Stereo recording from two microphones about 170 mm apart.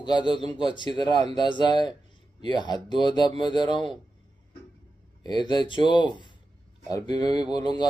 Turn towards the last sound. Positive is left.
turn(degrees=25)  # may be behind; listen again after turning